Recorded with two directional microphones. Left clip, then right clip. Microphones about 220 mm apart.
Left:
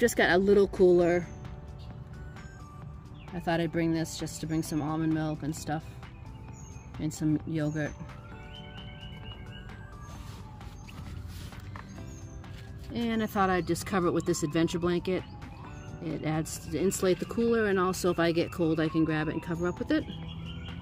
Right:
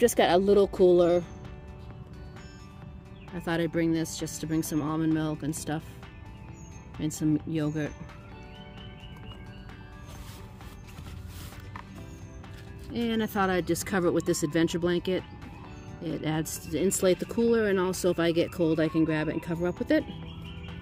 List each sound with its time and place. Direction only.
0.0 s speech: centre (ahead or behind)
3.3 s speech: 10° right (ahead or behind)
7.0 s speech: 20° right (ahead or behind)
12.9 s speech: 10° right (ahead or behind)